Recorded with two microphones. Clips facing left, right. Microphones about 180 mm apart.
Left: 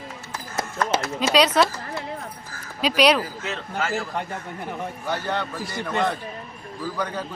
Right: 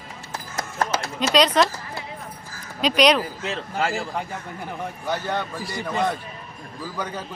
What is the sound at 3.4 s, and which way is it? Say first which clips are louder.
Speech: right 2 dB; 30° right (ahead or behind).